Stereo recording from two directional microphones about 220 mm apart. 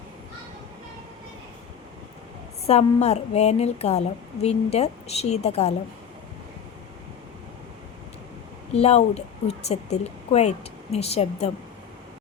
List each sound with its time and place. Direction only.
2.6 s a woman's voice: 30° left (ahead or behind)
8.7 s a woman's voice: 30° left (ahead or behind)